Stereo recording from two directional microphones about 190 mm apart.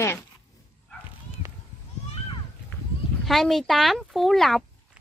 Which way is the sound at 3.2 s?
Centre (ahead or behind).